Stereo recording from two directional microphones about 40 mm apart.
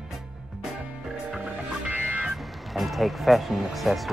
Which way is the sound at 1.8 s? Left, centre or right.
Right.